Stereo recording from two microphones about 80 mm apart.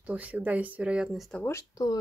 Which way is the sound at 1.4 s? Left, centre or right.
Left.